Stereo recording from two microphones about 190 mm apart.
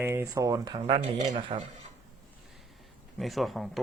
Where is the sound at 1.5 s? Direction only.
30° right (ahead or behind).